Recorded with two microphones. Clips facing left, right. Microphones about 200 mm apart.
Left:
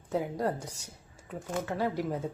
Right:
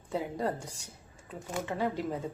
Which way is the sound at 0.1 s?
10° left (ahead or behind).